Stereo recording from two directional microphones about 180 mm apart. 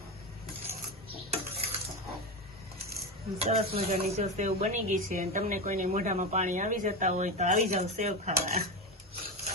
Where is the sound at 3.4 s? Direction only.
35° right (ahead or behind).